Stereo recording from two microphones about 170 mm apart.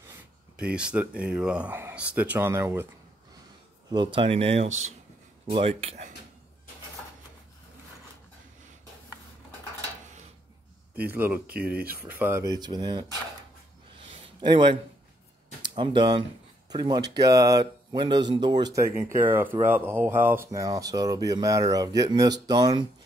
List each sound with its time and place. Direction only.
0.6 s speech: 5° right (ahead or behind)
3.9 s speech: 30° right (ahead or behind)
11.1 s speech: 10° right (ahead or behind)
11.4 s speech: 60° right (ahead or behind)
12.0 s speech: 10° right (ahead or behind)
12.4 s speech: 25° right (ahead or behind)
14.4 s speech: 30° right (ahead or behind)
18.8 s speech: 15° right (ahead or behind)